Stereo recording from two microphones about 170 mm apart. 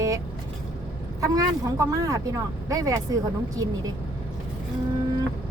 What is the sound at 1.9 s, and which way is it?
Speech, 20° right (ahead or behind).